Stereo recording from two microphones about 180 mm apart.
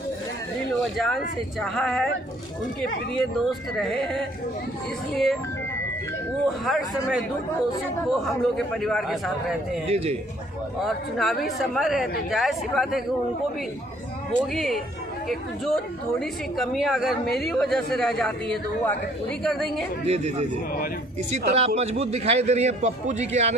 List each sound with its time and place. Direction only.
0.9 s a woman's voice: centre (ahead or behind)
3.2 s a woman's voice: centre (ahead or behind)
6.7 s a woman's voice: centre (ahead or behind)
8.2 s a woman's voice: centre (ahead or behind)
9.9 s a man's voice: 35° right (ahead or behind)
10.8 s a woman's voice: centre (ahead or behind)
14.5 s a woman's voice: centre (ahead or behind)
20.1 s a man's voice: 35° right (ahead or behind)